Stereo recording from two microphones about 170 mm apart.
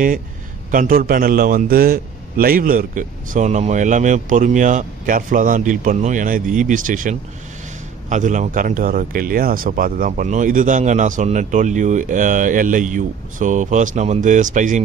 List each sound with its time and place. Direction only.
0.7 s speech: 55° right (ahead or behind)